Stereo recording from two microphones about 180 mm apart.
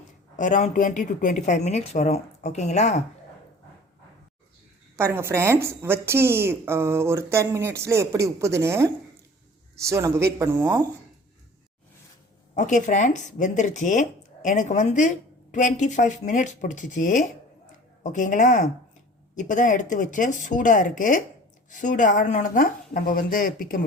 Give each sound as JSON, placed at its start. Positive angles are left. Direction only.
{"t": 0.3, "sound": "speech", "side_deg": 45}
{"t": 4.9, "sound": "a woman's voice", "side_deg": -10}
{"t": 12.5, "sound": "speech", "side_deg": 45}